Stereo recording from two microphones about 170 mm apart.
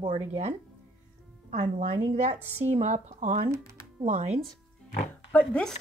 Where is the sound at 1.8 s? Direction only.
40° right (ahead or behind).